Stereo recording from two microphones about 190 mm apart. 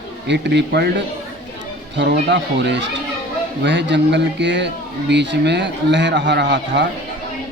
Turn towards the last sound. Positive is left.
turn(degrees=-70)  # may be behind; listen again after turning